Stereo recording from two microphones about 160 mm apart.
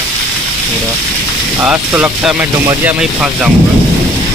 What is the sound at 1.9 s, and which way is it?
Speech, 15° right (ahead or behind).